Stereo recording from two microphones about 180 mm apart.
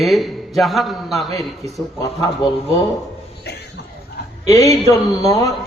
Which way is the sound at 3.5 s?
65° left (ahead or behind).